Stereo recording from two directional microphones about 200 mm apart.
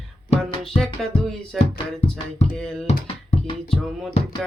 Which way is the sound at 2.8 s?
35° left (ahead or behind).